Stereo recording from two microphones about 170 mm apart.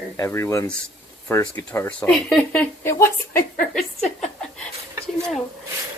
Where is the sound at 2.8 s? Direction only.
15° left (ahead or behind).